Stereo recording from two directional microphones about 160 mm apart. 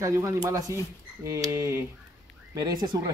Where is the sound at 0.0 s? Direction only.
20° right (ahead or behind).